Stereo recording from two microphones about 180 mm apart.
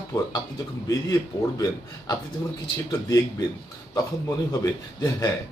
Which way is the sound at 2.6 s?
20° left (ahead or behind).